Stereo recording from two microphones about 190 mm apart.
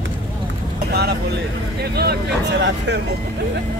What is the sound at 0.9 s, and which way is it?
Vehicle, 60° right (ahead or behind).